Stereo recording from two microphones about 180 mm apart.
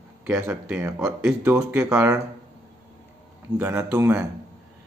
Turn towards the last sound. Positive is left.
turn(degrees=-15)  # may be behind; listen again after turning